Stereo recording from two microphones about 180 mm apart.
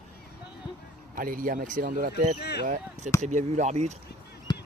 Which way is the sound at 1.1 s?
50° right (ahead or behind).